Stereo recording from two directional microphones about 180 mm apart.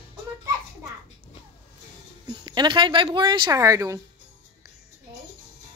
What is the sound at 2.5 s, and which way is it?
Speech, 25° right (ahead or behind).